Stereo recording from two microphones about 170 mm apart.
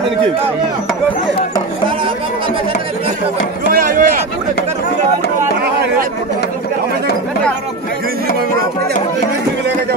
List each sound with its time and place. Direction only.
3.6 s chop: 55° right (ahead or behind)